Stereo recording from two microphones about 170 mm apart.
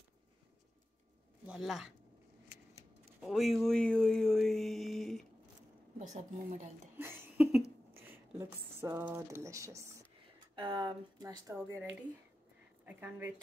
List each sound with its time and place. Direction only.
1.4 s speech: 5° right (ahead or behind)
3.2 s speech: centre (ahead or behind)
5.9 s a woman's voice: 45° right (ahead or behind)
7.0 s a sound: 15° right (ahead or behind)
7.9 s speech: 15° right (ahead or behind)
10.5 s speech: 30° right (ahead or behind); by 13.3 s 10° right (ahead or behind)